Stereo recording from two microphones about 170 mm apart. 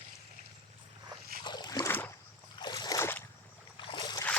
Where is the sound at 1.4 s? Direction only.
25° left (ahead or behind).